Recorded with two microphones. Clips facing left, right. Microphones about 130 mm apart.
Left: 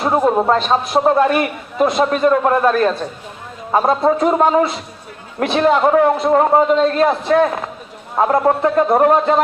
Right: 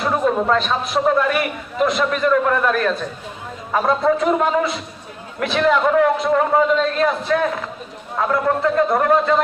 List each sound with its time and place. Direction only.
0.0 s a man's voice: 35° left (ahead or behind)